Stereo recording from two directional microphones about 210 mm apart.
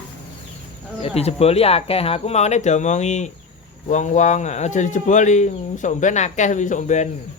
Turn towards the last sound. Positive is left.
turn(degrees=35)  # may be behind; listen again after turning